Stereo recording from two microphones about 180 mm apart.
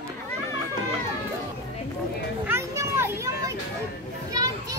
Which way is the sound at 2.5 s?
15° right (ahead or behind).